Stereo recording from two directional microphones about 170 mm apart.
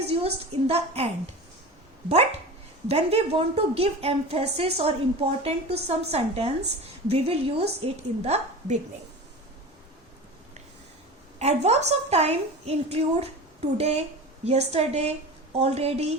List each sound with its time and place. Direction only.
0.1 s a woman's voice: 35° right (ahead or behind)
2.8 s a woman's voice: 40° right (ahead or behind)
11.3 s a woman's voice: 40° right (ahead or behind)